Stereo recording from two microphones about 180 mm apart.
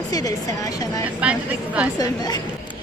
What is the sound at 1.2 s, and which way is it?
Speech, 5° right (ahead or behind).